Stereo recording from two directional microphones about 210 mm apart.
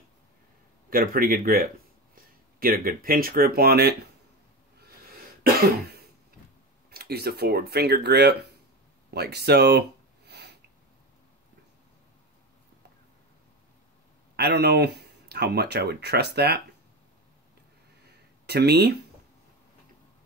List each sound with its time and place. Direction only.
0.8 s speech: 45° right (ahead or behind)
4.8 s cough: 45° right (ahead or behind)
6.9 s speech: 50° right (ahead or behind)
9.1 s a sound: 50° right (ahead or behind)
14.3 s speech: 50° right (ahead or behind)
18.5 s speech: 50° right (ahead or behind)